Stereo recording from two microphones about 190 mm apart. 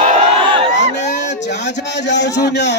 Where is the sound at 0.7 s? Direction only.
65° left (ahead or behind).